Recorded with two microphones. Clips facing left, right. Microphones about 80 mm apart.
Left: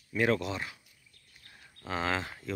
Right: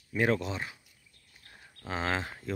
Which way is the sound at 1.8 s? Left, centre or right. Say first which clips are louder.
Even; right.